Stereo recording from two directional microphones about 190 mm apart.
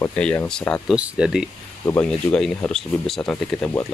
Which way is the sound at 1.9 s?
5° left (ahead or behind).